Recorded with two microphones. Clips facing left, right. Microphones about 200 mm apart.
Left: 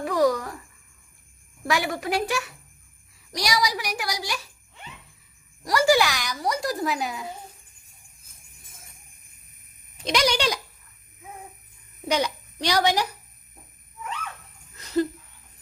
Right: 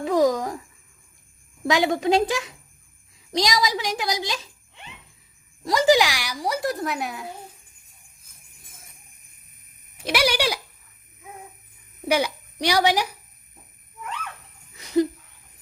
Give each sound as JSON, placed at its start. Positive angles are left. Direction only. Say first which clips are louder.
{"t": 0.0, "sound": "a sound", "louder": "right 2 dB", "side_deg": -20}
{"t": 1.6, "sound": "a woman's voice", "louder": "right 5 dB", "side_deg": -20}
{"t": 5.6, "sound": "a woman's voice", "louder": "right 2 dB", "side_deg": -20}
{"t": 10.0, "sound": "a woman's voice", "louder": "right 1 dB", "side_deg": -10}
{"t": 12.0, "sound": "a woman's voice", "louder": "right 2 dB", "side_deg": -10}
{"t": 14.7, "sound": "wheeze", "louder": "right 3 dB", "side_deg": -15}